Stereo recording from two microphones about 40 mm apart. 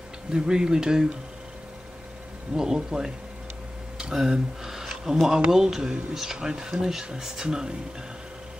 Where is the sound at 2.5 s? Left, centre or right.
Centre.